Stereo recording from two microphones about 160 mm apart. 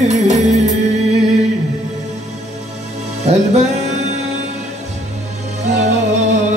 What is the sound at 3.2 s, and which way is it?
Music, 45° right (ahead or behind).